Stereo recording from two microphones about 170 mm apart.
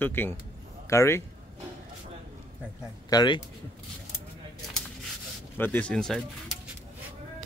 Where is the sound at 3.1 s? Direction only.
25° left (ahead or behind).